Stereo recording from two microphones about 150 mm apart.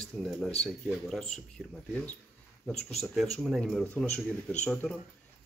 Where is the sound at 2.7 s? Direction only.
5° left (ahead or behind).